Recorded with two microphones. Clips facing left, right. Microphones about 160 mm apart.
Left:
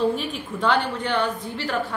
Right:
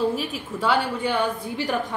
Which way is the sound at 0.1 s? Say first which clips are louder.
Even; 5° right (ahead or behind).